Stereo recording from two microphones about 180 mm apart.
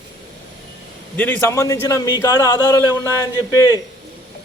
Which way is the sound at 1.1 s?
10° left (ahead or behind).